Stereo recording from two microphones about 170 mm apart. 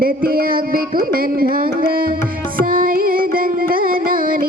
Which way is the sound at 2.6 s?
55° right (ahead or behind).